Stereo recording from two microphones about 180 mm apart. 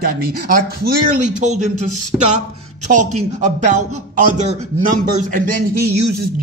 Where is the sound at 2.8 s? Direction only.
40° right (ahead or behind).